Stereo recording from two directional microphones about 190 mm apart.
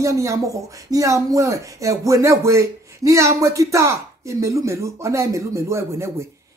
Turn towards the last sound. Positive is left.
turn(degrees=-15)  # may be behind; listen again after turning